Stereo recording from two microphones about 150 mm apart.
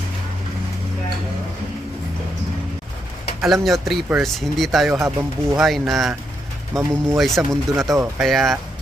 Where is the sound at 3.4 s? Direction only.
Centre (ahead or behind).